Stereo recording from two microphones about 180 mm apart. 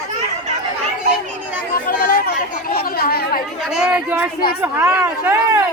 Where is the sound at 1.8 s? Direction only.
55° left (ahead or behind).